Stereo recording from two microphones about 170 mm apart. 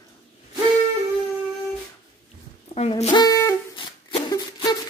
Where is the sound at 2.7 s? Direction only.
40° left (ahead or behind).